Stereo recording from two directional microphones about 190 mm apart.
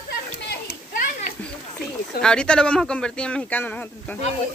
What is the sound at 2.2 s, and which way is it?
Speech, 5° left (ahead or behind).